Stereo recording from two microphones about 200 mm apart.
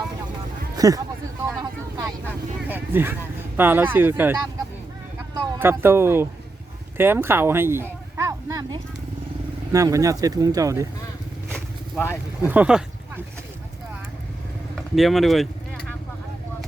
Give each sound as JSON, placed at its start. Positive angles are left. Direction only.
{"t": 0.8, "sound": "speech", "side_deg": -15}
{"t": 1.5, "sound": "vehicle", "side_deg": -20}
{"t": 2.6, "sound": "a sound", "side_deg": -10}
{"t": 3.6, "sound": "speech", "side_deg": -10}
{"t": 5.5, "sound": "speech", "side_deg": -10}
{"t": 6.9, "sound": "a sound", "side_deg": -10}
{"t": 9.7, "sound": "speech", "side_deg": -15}
{"t": 11.5, "sound": "vehicle", "side_deg": 10}
{"t": 12.4, "sound": "a sound", "side_deg": -10}
{"t": 14.8, "sound": "speech", "side_deg": 0}